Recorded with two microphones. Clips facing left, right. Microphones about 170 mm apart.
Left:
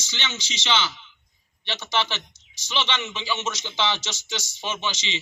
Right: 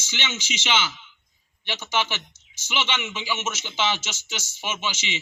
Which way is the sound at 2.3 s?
15° left (ahead or behind).